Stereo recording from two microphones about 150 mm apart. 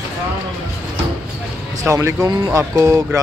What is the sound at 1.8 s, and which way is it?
Speech, 20° right (ahead or behind).